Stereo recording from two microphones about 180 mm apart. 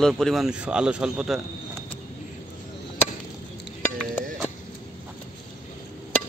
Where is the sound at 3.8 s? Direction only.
10° left (ahead or behind).